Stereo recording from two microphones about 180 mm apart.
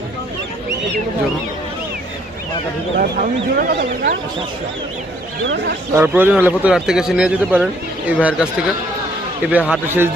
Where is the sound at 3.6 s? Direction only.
65° right (ahead or behind).